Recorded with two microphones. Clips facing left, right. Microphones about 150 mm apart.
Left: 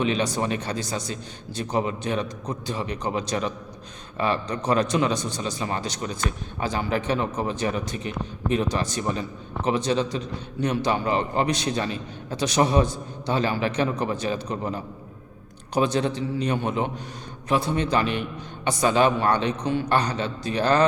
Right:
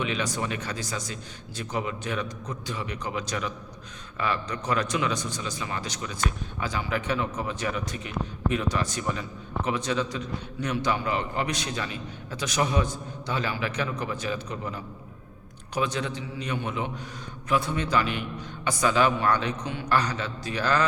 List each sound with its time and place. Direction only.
0.0 s a man's voice: 30° left (ahead or behind)